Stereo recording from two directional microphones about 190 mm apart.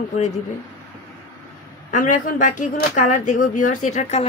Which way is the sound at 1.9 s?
45° left (ahead or behind).